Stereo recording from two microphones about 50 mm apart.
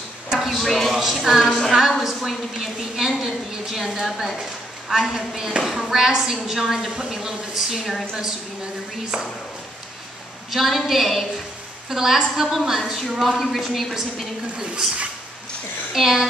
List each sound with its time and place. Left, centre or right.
0.3 s a sound: centre
0.6 s a woman's voice: centre
9.1 s a woman's voice: centre
10.5 s a woman's voice: centre
15.9 s a woman's voice: centre